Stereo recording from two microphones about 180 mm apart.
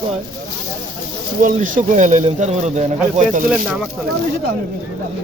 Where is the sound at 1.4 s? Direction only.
45° right (ahead or behind).